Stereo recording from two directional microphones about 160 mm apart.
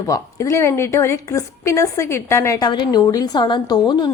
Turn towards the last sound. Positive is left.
turn(degrees=25)  # may be behind; listen again after turning